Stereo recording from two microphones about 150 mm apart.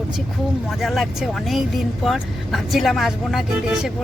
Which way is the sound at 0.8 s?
Centre (ahead or behind).